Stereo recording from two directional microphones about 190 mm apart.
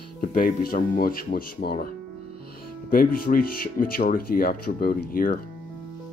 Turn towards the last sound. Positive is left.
turn(degrees=50)  # may be behind; listen again after turning